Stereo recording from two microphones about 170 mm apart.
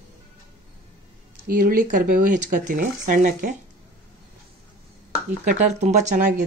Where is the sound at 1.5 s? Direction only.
55° right (ahead or behind).